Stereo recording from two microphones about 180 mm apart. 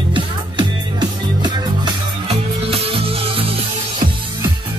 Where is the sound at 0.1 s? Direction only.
25° right (ahead or behind).